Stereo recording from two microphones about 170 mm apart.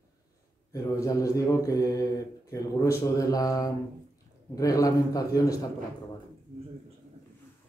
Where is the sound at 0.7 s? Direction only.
20° left (ahead or behind).